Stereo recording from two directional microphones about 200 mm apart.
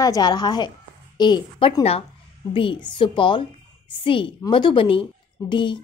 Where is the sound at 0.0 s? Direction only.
20° left (ahead or behind).